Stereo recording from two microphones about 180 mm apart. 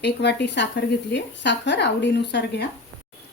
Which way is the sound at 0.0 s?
70° left (ahead or behind).